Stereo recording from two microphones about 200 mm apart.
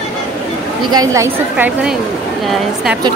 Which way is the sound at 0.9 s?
20° right (ahead or behind).